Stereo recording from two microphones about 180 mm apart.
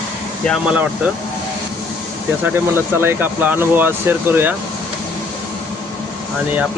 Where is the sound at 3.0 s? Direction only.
10° right (ahead or behind).